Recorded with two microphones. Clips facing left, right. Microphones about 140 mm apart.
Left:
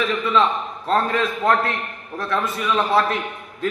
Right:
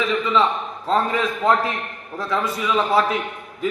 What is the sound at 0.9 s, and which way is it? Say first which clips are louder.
A man's voice: even; 10° right (ahead or behind).